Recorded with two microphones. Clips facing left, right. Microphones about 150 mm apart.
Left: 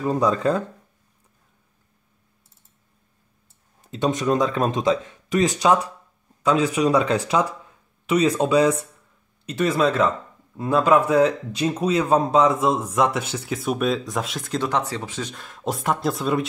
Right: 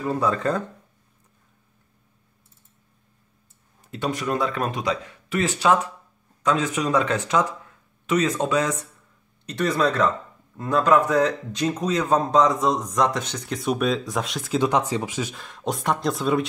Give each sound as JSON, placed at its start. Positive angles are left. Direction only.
{"t": 0.0, "sound": "speech", "side_deg": 15}
{"t": 3.9, "sound": "speech", "side_deg": 20}
{"t": 14.6, "sound": "speech", "side_deg": -15}
{"t": 15.3, "sound": "speech", "side_deg": 0}